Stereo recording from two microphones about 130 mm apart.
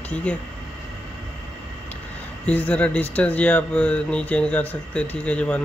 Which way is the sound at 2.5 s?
10° left (ahead or behind).